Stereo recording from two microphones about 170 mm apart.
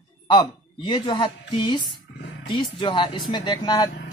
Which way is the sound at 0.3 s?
25° left (ahead or behind).